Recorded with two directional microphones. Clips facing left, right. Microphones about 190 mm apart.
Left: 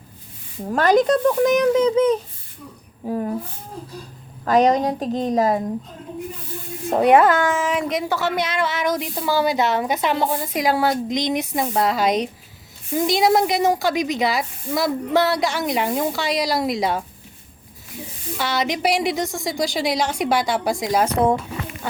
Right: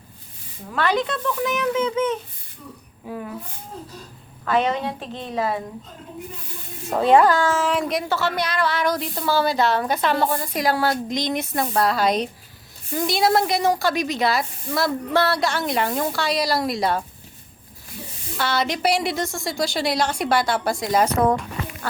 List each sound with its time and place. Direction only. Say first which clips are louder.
0.7 s a child's voice: left 7 dB; 40° left (ahead or behind)
4.4 s a child's voice: left 5 dB; 40° left (ahead or behind)
6.9 s a woman's voice: left 1 dB; 20° left (ahead or behind)
18.3 s a woman's voice: even; 15° left (ahead or behind)